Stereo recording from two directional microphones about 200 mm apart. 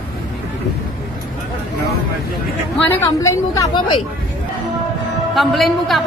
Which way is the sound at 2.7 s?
10° left (ahead or behind).